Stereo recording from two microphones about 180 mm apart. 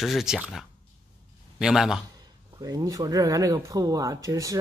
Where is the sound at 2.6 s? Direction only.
20° right (ahead or behind).